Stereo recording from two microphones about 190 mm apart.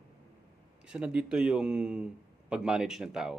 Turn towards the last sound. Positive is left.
turn(degrees=-5)  # may be behind; listen again after turning